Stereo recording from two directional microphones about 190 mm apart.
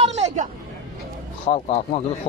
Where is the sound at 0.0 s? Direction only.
35° right (ahead or behind).